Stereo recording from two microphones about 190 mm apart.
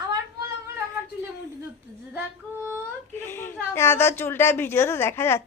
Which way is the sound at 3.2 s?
15° left (ahead or behind).